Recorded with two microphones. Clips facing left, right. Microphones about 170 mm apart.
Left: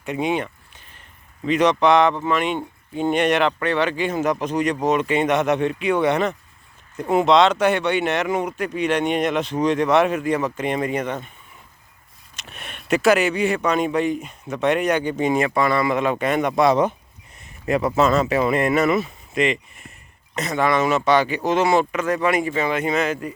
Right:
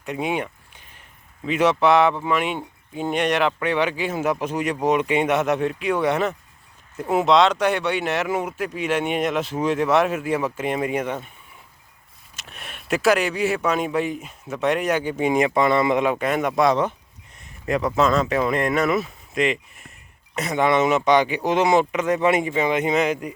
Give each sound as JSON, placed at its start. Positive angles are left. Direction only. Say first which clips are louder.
{"t": 0.0, "sound": "a sound", "louder": "left 2 dB", "side_deg": 0}
{"t": 1.5, "sound": "speech", "louder": "left 1 dB", "side_deg": -5}
{"t": 3.6, "sound": "speech", "louder": "left 1 dB", "side_deg": -10}
{"t": 12.4, "sound": "speech", "louder": "left 1 dB", "side_deg": 0}
{"t": 16.1, "sound": "speech", "louder": "left 1 dB", "side_deg": 0}
{"t": 20.3, "sound": "speech", "louder": "right 1 dB", "side_deg": -10}